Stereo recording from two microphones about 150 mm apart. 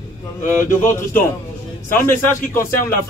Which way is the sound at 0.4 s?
60° left (ahead or behind).